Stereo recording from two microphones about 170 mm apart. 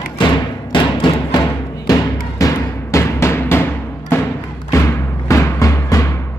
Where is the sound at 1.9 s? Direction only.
20° left (ahead or behind).